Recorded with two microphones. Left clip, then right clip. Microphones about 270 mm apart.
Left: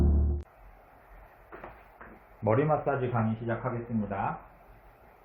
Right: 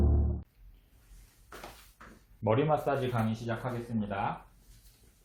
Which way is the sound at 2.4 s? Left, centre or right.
Centre.